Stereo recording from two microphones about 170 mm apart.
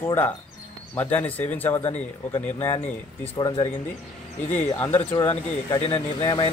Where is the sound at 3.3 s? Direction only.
25° left (ahead or behind).